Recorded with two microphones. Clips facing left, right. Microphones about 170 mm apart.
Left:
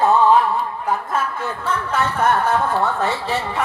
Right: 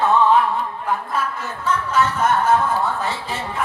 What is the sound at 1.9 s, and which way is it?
Speech, 60° left (ahead or behind).